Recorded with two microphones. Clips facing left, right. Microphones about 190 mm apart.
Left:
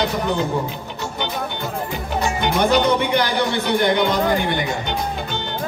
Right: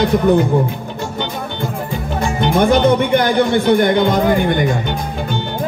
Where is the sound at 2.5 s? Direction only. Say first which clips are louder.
Right 5 dB; 50° right (ahead or behind).